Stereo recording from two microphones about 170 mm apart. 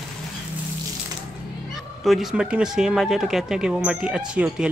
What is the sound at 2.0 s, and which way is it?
Speech, centre (ahead or behind).